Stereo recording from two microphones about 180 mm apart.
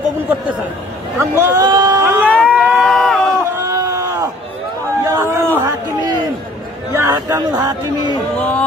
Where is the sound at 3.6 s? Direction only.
15° right (ahead or behind).